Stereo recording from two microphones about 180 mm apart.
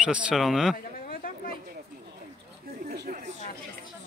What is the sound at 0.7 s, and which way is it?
Chatter, 55° left (ahead or behind).